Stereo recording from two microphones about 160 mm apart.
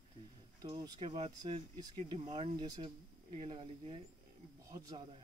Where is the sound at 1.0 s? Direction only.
45° right (ahead or behind).